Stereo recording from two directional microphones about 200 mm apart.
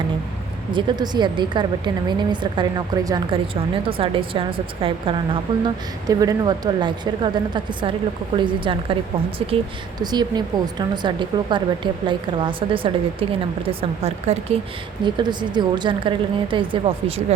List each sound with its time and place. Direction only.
0.7 s a woman's voice: 25° right (ahead or behind)